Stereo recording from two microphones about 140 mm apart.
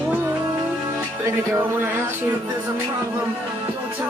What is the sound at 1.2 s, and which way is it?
Speech, 15° right (ahead or behind).